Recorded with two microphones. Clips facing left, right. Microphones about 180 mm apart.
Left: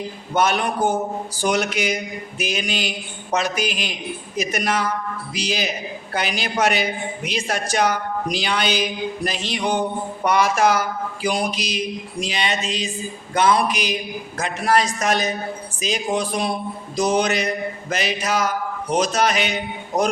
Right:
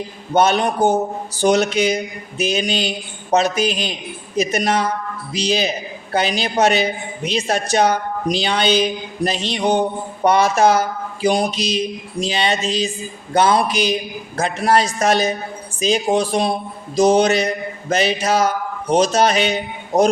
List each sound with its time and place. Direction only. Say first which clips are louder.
0.3 s speech: right 4 dB; 25° right (ahead or behind)